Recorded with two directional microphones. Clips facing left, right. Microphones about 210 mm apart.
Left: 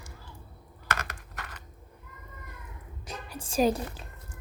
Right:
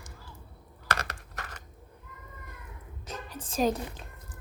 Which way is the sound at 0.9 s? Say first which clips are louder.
Right 1 dB; 40° right (ahead or behind).